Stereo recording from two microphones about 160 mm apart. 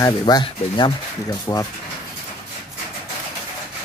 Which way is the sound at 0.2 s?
30° left (ahead or behind).